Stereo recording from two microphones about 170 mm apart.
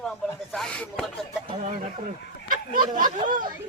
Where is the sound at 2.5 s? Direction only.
50° right (ahead or behind).